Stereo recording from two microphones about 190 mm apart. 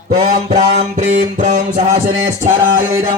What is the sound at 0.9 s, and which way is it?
A man's voice, 40° right (ahead or behind).